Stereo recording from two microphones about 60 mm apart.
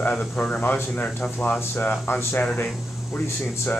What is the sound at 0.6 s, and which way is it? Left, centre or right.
Speech, left.